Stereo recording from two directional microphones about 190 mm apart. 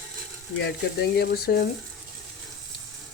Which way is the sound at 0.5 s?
60° left (ahead or behind).